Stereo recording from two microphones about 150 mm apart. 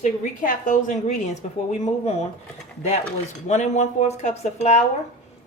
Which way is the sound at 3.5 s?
50° left (ahead or behind).